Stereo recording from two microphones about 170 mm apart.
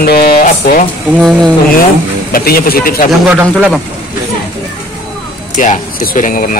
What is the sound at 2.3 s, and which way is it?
Speech, 65° left (ahead or behind).